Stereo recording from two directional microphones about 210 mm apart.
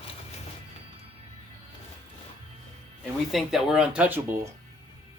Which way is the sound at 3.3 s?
Centre (ahead or behind).